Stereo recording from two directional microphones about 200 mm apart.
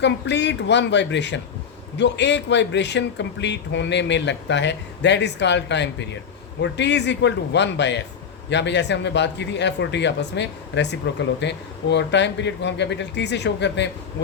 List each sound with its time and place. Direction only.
0.0 s speech: 60° left (ahead or behind)